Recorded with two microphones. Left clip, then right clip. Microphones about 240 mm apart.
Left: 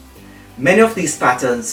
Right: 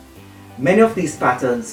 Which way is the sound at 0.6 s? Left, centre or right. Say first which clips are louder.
Left 2 dB; centre.